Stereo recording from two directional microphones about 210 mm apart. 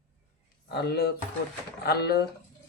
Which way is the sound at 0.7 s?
50° left (ahead or behind).